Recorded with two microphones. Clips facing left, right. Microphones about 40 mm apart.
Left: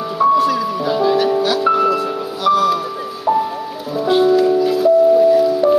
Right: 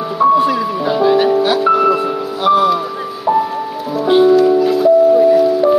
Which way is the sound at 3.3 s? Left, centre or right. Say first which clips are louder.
Right 2 dB; centre.